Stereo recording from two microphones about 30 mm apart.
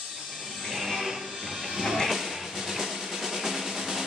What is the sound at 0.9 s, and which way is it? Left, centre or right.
Music, centre.